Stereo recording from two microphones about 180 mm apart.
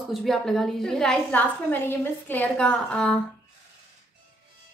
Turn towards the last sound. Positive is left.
turn(degrees=5)  # may be behind; listen again after turning